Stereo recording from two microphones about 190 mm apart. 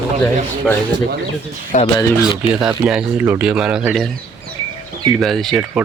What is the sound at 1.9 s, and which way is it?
Speech, 20° left (ahead or behind).